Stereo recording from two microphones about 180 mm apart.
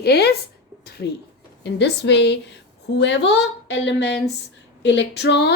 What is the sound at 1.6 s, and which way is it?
A woman's voice, 70° left (ahead or behind).